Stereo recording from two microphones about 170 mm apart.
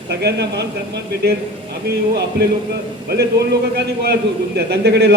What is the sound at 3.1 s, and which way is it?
A man's voice, 70° right (ahead or behind).